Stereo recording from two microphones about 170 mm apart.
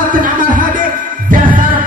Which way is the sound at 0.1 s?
50° right (ahead or behind).